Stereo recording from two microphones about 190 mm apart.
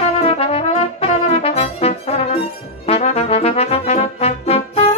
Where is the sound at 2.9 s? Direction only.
30° left (ahead or behind).